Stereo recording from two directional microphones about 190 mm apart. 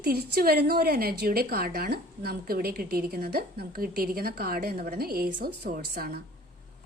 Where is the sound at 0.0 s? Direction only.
55° right (ahead or behind).